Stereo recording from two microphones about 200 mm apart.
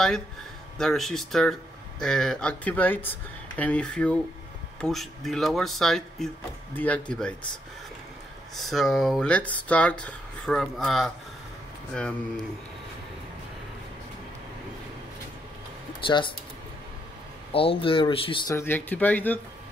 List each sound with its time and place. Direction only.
0.7 s speech: centre (ahead or behind)
8.5 s speech: centre (ahead or behind)
16.0 s speech: 25° left (ahead or behind)
17.5 s speech: 30° left (ahead or behind)
18.5 s speech: 10° left (ahead or behind)